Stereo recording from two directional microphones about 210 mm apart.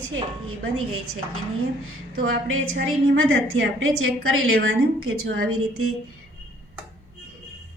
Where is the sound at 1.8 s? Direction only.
70° right (ahead or behind).